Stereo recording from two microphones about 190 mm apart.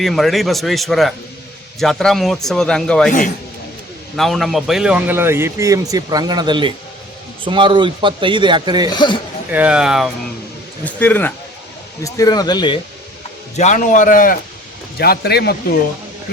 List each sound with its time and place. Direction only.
0.0 s speech: centre (ahead or behind)
3.1 s a man's voice: 45° left (ahead or behind)
4.2 s a man's voice: centre (ahead or behind); by 8.9 s 25° right (ahead or behind)
8.9 s speech: 25° left (ahead or behind)
9.5 s speech: 5° right (ahead or behind)
10.8 s speech: 10° left (ahead or behind)
13.6 s a man's voice: 40° left (ahead or behind); by 15.8 s 60° left (ahead or behind)